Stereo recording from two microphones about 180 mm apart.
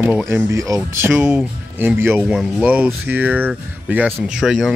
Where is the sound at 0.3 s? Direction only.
15° right (ahead or behind).